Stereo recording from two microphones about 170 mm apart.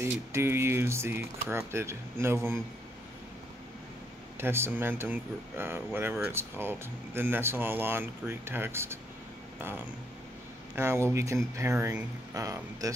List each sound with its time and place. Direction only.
0.0 s speech: 15° right (ahead or behind)
4.4 s speech: 15° right (ahead or behind)
10.8 s speech: 15° right (ahead or behind)